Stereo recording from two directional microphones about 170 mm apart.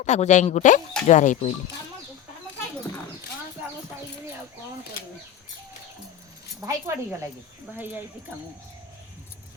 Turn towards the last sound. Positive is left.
turn(degrees=-10)  # may be behind; listen again after turning